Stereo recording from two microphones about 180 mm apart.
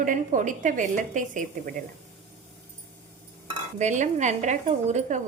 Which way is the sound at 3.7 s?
40° right (ahead or behind).